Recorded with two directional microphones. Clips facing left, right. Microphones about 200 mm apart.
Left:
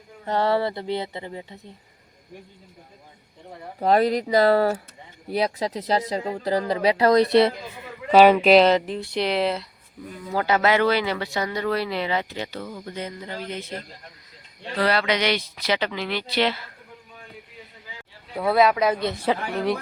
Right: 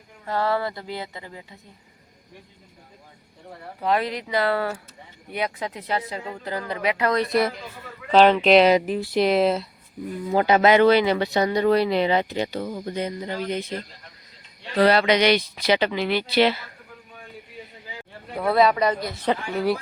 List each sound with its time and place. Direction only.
0.3 s speech: 25° left (ahead or behind)
3.8 s speech: 40° left (ahead or behind)
7.7 s a man's voice: 15° left (ahead or behind)
8.6 s speech: 10° right (ahead or behind)
9.3 s speech: 25° right (ahead or behind)
14.8 s speech: 20° right (ahead or behind)
18.3 s speech: centre (ahead or behind)